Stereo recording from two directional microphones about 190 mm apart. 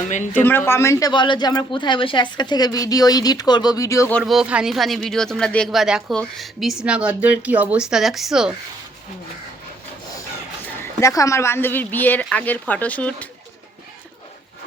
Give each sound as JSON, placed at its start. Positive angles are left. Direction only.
{"t": 0.3, "sound": "speech", "side_deg": 10}
{"t": 4.2, "sound": "speech", "side_deg": -5}
{"t": 11.0, "sound": "speech", "side_deg": 15}